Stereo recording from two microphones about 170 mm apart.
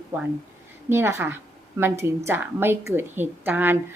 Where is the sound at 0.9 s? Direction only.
15° right (ahead or behind).